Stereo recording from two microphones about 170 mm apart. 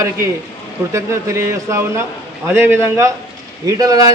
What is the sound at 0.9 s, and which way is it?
A man's voice, 15° right (ahead or behind).